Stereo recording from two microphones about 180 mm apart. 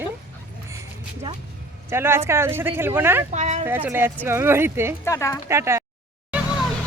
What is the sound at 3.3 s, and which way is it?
Speech, 40° right (ahead or behind).